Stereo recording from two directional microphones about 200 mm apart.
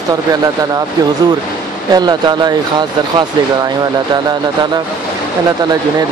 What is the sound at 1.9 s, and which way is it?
Speech, 20° right (ahead or behind).